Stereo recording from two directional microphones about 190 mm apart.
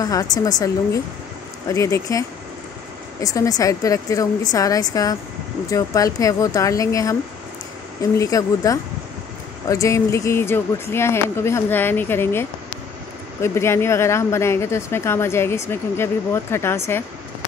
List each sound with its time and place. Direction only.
0.0 s a woman's voice: 20° left (ahead or behind)
8.2 s a woman's voice: 15° left (ahead or behind)